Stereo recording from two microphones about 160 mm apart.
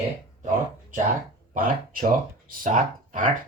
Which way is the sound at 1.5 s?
60° right (ahead or behind).